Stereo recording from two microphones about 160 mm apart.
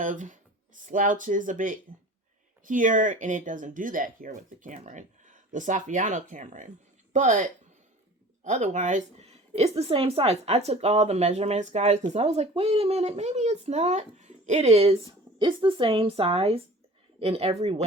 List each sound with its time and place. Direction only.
0.0 s a woman's voice: 55° right (ahead or behind)
8.4 s a woman's voice: 50° right (ahead or behind)
15.4 s speech: 30° right (ahead or behind)